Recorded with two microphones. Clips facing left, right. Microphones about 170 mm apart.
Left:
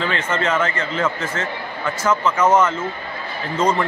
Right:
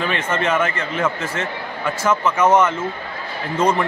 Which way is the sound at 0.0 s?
15° right (ahead or behind).